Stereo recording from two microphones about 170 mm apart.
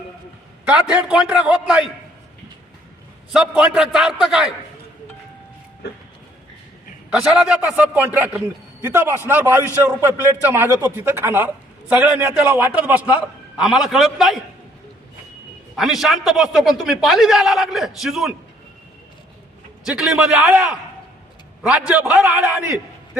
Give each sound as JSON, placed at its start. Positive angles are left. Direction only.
{"t": 0.9, "sound": "a man's voice", "side_deg": -5}
{"t": 3.3, "sound": "a man's voice", "side_deg": -5}
{"t": 7.1, "sound": "a man's voice", "side_deg": 0}
{"t": 15.7, "sound": "a man's voice", "side_deg": 0}
{"t": 19.8, "sound": "a man's voice", "side_deg": -5}